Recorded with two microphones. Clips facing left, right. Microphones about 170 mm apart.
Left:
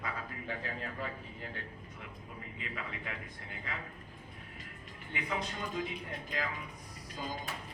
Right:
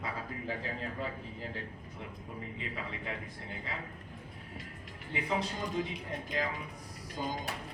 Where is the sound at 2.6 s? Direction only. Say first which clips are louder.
Left 1 dB; 30° right (ahead or behind).